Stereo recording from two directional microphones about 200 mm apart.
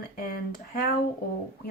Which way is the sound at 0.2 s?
45° left (ahead or behind).